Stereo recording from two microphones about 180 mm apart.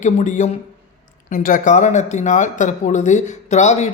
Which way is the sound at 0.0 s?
45° left (ahead or behind).